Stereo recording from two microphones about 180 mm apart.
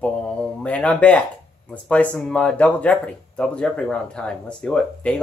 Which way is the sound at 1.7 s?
5° left (ahead or behind).